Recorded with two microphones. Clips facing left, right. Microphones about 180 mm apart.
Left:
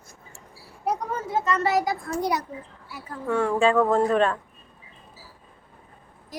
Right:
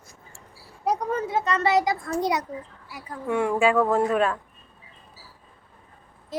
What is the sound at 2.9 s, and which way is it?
A woman's voice, 15° right (ahead or behind).